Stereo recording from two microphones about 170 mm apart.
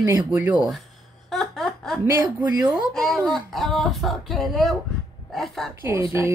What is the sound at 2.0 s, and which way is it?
Speech, 20° right (ahead or behind).